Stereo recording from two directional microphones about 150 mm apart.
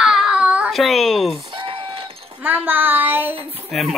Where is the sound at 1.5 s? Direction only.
35° right (ahead or behind).